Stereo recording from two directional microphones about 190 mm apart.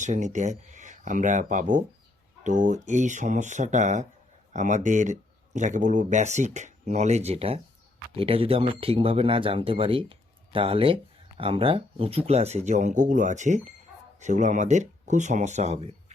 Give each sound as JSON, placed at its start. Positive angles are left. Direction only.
{"t": 0.0, "sound": "speech", "side_deg": -40}